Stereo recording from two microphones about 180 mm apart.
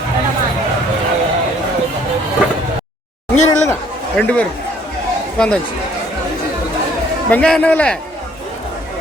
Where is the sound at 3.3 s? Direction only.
40° left (ahead or behind).